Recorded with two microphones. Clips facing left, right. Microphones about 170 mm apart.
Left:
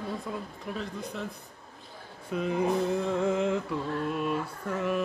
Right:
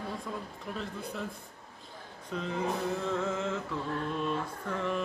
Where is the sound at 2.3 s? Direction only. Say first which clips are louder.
Left 6 dB; 10° left (ahead or behind).